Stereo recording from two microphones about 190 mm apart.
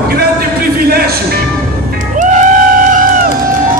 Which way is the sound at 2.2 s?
40° right (ahead or behind).